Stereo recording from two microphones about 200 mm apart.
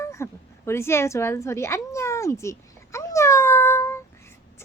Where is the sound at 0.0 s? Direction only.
15° left (ahead or behind).